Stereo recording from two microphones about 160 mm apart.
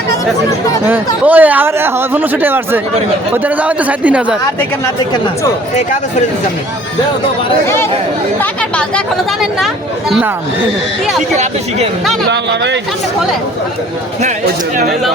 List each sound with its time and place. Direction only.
0.9 s speech: 10° right (ahead or behind)
5.7 s speech: 50° left (ahead or behind)
10.1 s speech: 5° right (ahead or behind)
12.3 s speech: 90° right